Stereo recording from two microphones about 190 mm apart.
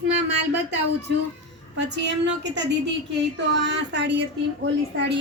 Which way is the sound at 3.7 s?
65° right (ahead or behind).